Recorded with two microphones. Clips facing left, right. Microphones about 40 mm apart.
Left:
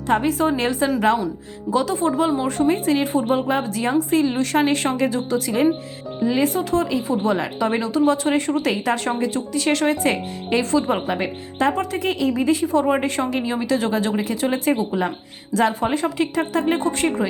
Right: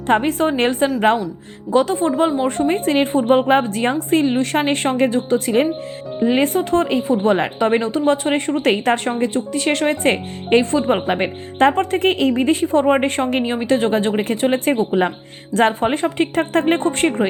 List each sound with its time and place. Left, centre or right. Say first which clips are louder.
0.1 s a woman's voice: right 2 dB; right
11.1 s speech: right 4 dB; right
12.3 s a woman's voice: right 3 dB; right